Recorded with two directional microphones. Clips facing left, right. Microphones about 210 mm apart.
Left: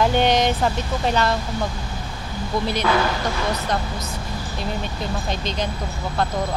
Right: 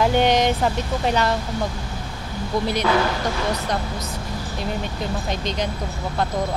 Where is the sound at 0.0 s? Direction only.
5° right (ahead or behind).